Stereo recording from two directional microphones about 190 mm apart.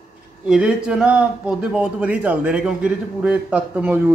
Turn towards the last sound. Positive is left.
turn(degrees=-10)  # may be behind; listen again after turning